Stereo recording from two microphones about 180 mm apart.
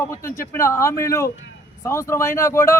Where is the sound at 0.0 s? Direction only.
15° left (ahead or behind).